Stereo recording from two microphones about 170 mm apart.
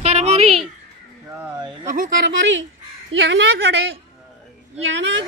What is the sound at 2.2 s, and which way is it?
A woman's voice, 90° right.